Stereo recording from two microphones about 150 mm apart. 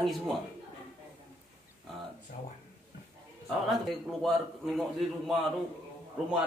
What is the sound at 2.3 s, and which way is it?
Speech, 65° left (ahead or behind).